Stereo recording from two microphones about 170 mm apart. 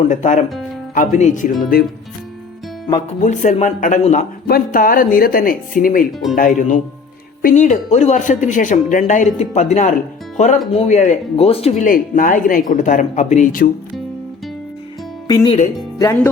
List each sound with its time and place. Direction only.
0.1 s speech: 45° left (ahead or behind)
3.2 s speech: 45° left (ahead or behind)
4.4 s speech: 60° left (ahead or behind)
15.3 s speech: 20° left (ahead or behind)